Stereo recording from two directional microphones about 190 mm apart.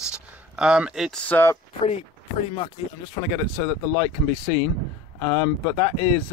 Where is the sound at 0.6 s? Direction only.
5° right (ahead or behind).